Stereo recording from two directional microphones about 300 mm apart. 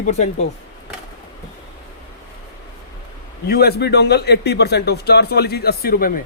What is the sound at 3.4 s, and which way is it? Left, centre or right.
A man's voice, left.